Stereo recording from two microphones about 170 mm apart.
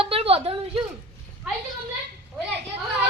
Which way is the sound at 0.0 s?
35° right (ahead or behind).